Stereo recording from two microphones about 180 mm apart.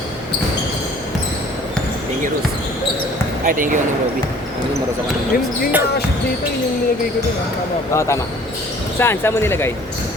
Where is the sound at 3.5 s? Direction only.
50° right (ahead or behind).